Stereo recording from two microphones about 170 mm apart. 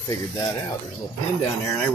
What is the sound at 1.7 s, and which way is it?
Speech, 10° left (ahead or behind).